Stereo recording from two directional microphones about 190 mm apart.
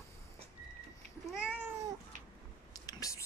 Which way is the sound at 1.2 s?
5° right (ahead or behind).